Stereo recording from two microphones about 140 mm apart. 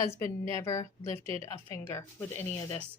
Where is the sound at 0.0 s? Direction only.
25° left (ahead or behind).